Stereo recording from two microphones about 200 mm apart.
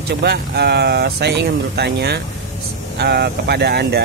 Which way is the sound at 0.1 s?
55° right (ahead or behind).